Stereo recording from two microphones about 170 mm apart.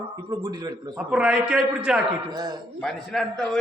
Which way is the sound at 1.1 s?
5° right (ahead or behind).